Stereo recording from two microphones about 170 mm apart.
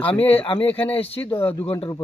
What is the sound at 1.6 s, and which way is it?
Speech, 30° left (ahead or behind).